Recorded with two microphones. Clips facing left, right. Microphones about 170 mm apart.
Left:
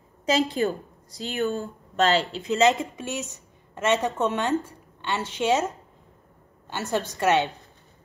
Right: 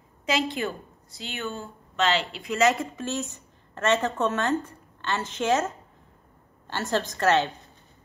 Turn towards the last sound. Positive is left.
turn(degrees=15)  # may be behind; listen again after turning